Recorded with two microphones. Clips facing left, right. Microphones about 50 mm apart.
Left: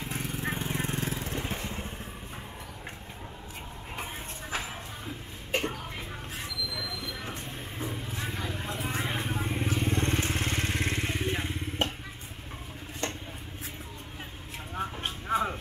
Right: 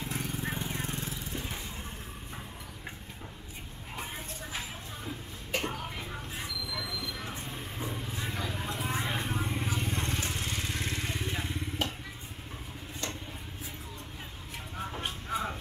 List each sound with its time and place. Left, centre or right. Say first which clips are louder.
0.0 s jackhammer: left 2 dB; centre
0.8 s vehicle: left 5 dB; left
5.9 s vehicle: even; centre
9.8 s vehicle: left 5 dB; left
10.7 s motorcycle: left 4 dB; left
13.0 s dishes: left 4 dB; left
15.0 s a sound: left 6 dB; left